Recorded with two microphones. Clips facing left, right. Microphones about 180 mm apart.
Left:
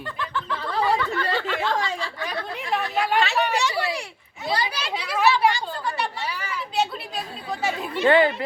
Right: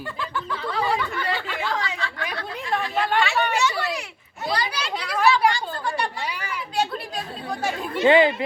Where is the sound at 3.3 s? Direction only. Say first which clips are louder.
Even; 30° left (ahead or behind).